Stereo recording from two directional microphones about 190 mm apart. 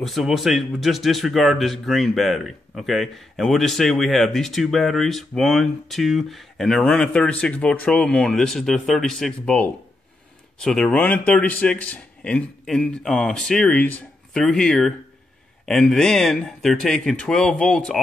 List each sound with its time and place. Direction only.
0.0 s a man's voice: centre (ahead or behind)